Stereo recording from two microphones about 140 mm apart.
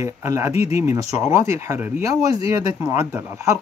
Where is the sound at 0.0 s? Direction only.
20° right (ahead or behind).